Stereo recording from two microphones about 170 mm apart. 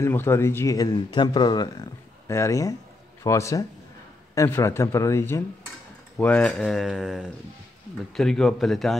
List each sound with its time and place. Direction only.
0.0 s speech: 15° left (ahead or behind)